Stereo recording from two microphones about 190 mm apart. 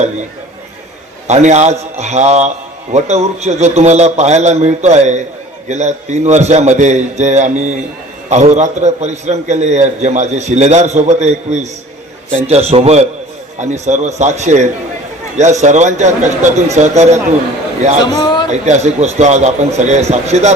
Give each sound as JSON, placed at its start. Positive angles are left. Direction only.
{"t": 1.3, "sound": "a man's voice", "side_deg": -35}
{"t": 18.0, "sound": "speech", "side_deg": 20}
{"t": 18.4, "sound": "a man's voice", "side_deg": -40}